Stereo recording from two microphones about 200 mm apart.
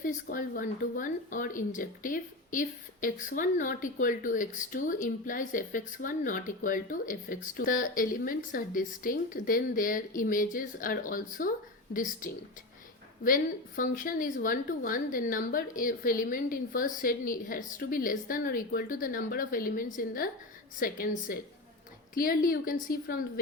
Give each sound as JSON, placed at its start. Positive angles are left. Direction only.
{"t": 0.0, "sound": "a woman's voice", "side_deg": 45}
{"t": 13.2, "sound": "a woman's voice", "side_deg": 45}